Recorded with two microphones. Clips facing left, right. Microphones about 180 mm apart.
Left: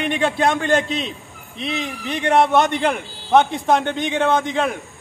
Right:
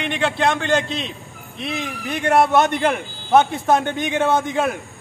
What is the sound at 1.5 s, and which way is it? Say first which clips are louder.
A man's voice: left 1 dB; 5° right (ahead or behind).